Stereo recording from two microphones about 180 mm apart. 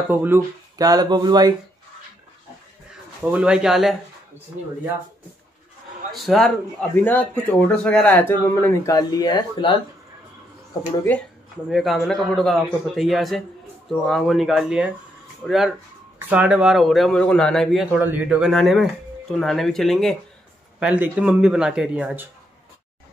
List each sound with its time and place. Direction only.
0.1 s speech: 10° right (ahead or behind)
3.2 s speech: 5° right (ahead or behind)
6.1 s speech: centre (ahead or behind); by 9.8 s 25° left (ahead or behind)
11.7 s speech: centre (ahead or behind)